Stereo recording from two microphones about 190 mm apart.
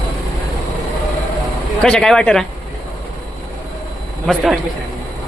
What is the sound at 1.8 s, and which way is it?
Speech, 5° left (ahead or behind).